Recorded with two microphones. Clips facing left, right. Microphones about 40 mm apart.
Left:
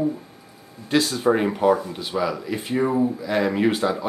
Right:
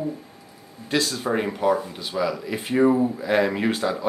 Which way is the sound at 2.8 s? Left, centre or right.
Centre.